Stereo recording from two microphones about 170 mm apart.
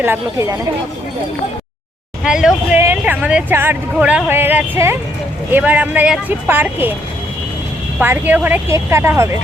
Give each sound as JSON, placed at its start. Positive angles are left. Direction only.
{"t": 0.0, "sound": "a woman's voice", "side_deg": -15}
{"t": 2.2, "sound": "speech", "side_deg": -5}
{"t": 7.9, "sound": "speech", "side_deg": -10}